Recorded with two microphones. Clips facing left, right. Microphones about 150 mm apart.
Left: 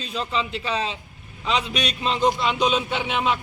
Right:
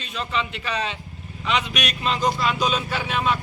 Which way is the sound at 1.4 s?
30° left (ahead or behind).